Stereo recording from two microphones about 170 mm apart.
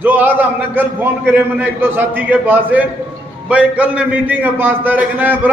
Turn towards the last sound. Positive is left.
turn(degrees=-10)  # may be behind; listen again after turning